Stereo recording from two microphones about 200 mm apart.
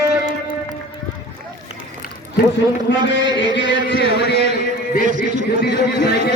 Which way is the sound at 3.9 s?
25° right (ahead or behind).